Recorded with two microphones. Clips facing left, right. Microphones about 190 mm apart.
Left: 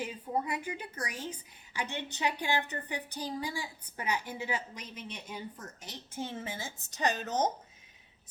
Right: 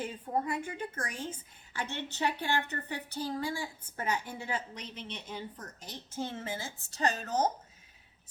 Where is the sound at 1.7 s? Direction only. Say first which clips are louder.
Even; 15° left (ahead or behind).